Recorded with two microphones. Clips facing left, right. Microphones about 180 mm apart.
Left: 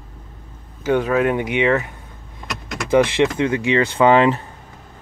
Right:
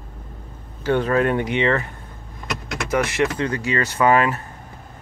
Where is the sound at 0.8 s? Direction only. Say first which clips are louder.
Left 1 dB; 10° left (ahead or behind).